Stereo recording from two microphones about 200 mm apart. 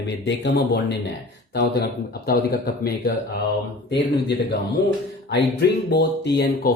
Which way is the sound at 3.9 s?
55° left (ahead or behind).